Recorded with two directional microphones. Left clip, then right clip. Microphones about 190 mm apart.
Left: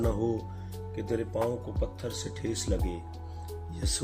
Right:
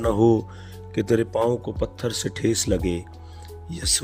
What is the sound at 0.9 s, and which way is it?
Speech, 60° right (ahead or behind).